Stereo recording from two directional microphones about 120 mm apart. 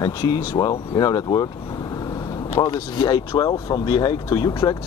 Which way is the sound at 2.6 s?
35° left (ahead or behind).